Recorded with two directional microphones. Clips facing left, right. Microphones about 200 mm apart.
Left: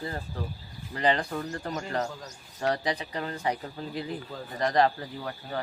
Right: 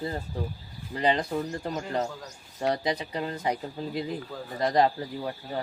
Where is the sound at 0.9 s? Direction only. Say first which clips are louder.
Right 1 dB; 15° right (ahead or behind).